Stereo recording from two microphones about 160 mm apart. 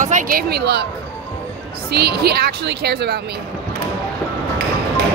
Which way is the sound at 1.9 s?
90° right.